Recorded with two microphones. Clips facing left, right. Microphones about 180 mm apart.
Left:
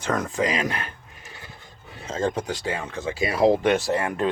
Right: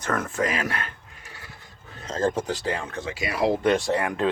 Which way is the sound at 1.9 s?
10° left (ahead or behind).